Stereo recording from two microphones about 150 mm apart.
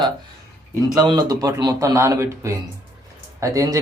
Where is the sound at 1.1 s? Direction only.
25° right (ahead or behind).